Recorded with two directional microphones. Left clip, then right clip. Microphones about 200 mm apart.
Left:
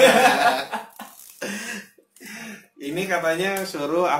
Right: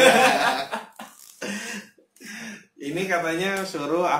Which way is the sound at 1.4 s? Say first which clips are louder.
Left 1 dB; 15° left (ahead or behind).